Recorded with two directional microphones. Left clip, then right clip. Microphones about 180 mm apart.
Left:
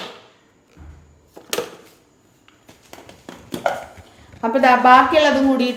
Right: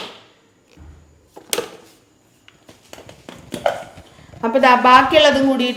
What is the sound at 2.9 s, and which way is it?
Fireworks, 20° right (ahead or behind).